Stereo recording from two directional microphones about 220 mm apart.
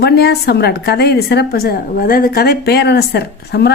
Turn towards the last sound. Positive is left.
turn(degrees=45)  # may be behind; listen again after turning